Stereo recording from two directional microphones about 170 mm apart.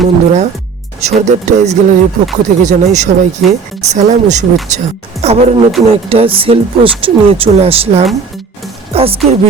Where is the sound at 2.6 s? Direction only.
45° right (ahead or behind).